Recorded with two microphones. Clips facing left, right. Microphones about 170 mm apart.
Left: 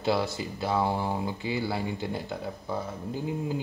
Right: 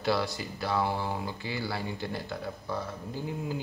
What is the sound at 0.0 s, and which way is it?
A man's voice, 20° left (ahead or behind).